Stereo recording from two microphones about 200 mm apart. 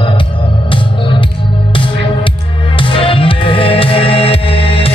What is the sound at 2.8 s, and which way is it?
Music, 25° left (ahead or behind).